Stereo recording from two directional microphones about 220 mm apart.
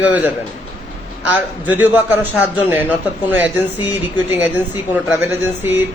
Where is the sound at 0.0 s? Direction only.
5° right (ahead or behind).